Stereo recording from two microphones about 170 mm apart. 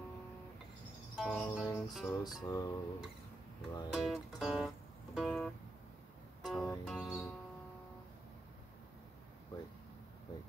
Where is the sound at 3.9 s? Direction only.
5° right (ahead or behind).